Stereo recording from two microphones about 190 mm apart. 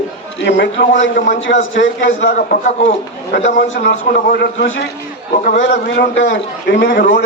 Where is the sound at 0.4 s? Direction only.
65° left (ahead or behind).